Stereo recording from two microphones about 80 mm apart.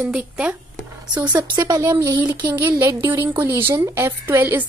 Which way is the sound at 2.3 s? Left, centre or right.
Right.